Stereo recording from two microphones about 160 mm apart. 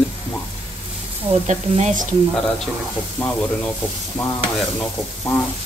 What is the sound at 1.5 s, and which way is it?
Speech, 45° right (ahead or behind).